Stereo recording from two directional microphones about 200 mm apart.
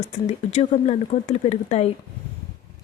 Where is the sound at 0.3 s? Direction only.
35° left (ahead or behind).